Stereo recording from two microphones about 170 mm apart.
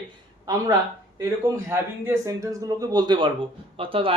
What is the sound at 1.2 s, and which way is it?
A man's voice, 15° right (ahead or behind).